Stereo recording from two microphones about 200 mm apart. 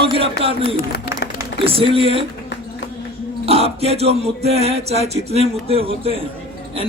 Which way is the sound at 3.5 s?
30° right (ahead or behind).